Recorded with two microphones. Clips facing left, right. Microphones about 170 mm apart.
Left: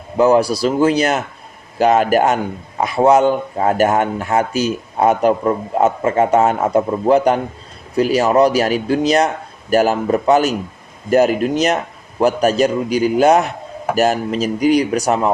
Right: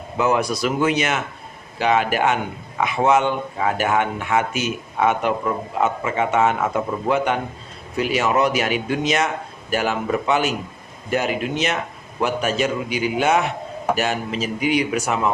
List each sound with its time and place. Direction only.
0.2 s a man's voice: 35° left (ahead or behind)